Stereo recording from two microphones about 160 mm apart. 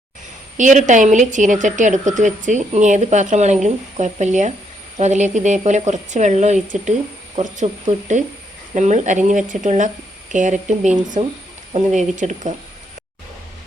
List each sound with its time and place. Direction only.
0.5 s speech: 50° right (ahead or behind)